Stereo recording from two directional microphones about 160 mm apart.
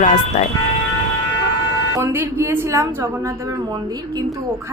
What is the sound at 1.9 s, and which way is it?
A woman's voice, 15° right (ahead or behind).